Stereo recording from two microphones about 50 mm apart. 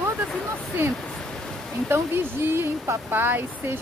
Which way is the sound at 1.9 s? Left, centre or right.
Right.